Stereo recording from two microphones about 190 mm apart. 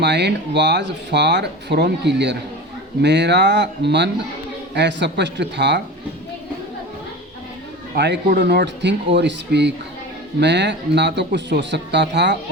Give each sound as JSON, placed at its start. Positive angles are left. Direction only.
{"t": 0.0, "sound": "speech", "side_deg": -65}
{"t": 7.9, "sound": "speech", "side_deg": -60}